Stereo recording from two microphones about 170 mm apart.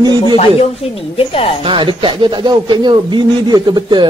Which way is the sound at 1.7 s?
30° right (ahead or behind).